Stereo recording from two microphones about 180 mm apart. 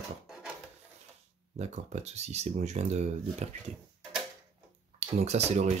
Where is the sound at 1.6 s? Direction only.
40° right (ahead or behind).